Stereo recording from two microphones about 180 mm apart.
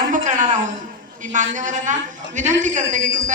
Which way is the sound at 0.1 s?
45° right (ahead or behind).